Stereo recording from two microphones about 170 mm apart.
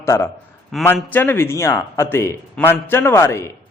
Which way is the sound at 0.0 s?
15° left (ahead or behind).